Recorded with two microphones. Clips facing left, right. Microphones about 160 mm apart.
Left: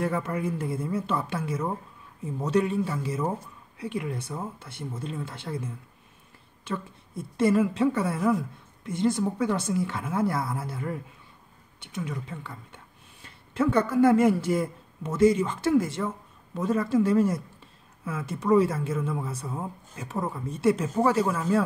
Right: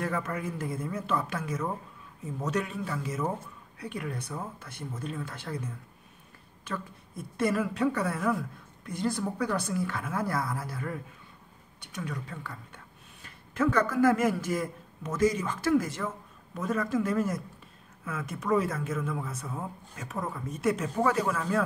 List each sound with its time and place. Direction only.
0.0 s a woman's voice: 30° left (ahead or behind)
6.6 s a woman's voice: 25° left (ahead or behind)